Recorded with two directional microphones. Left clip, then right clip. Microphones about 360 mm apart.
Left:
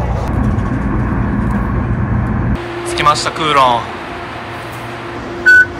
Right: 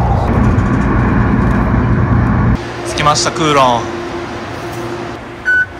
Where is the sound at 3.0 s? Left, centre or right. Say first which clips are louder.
Even; centre.